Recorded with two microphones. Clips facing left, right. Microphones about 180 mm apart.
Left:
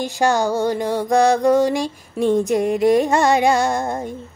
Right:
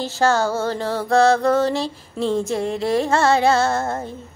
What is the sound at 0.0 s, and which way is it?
Female singing, 15° left (ahead or behind).